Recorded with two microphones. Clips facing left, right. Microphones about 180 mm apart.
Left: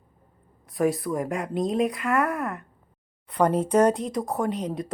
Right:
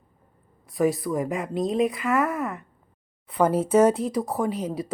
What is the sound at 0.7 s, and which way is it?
Speech, centre (ahead or behind).